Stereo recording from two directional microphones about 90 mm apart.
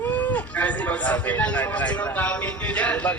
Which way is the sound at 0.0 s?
20° left (ahead or behind).